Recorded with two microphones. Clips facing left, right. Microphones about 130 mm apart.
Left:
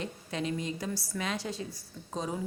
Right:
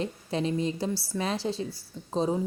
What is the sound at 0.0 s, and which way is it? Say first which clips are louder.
A woman's voice: right 5 dB; 30° right (ahead or behind).